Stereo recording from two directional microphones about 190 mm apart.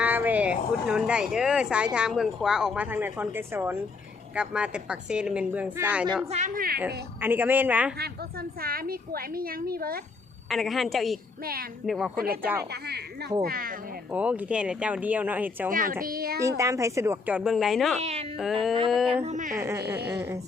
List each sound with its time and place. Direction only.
0.0 s speech: 10° right (ahead or behind)
6.2 s a woman's voice: 35° right (ahead or behind)
7.2 s speech: 10° right (ahead or behind)
7.9 s a woman's voice: 55° right (ahead or behind)
10.5 s speech: centre (ahead or behind)
11.4 s a woman's voice: 50° right (ahead or behind)
11.9 s speech: centre (ahead or behind)
12.1 s a woman's voice: 50° right (ahead or behind)
14.1 s speech: 10° right (ahead or behind)
15.7 s a woman's voice: 45° right (ahead or behind)
16.4 s speech: 15° right (ahead or behind); by 18.0 s centre (ahead or behind)
18.0 s speech: 35° right (ahead or behind)
19.5 s speech: 15° right (ahead or behind)